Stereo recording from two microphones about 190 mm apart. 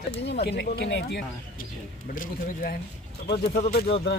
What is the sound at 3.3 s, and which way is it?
Speech, 60° left (ahead or behind).